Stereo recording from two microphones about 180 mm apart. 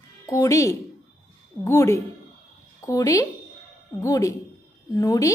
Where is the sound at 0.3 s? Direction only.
20° left (ahead or behind).